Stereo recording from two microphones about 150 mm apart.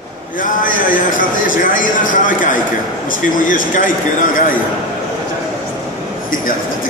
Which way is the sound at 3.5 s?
65° left (ahead or behind).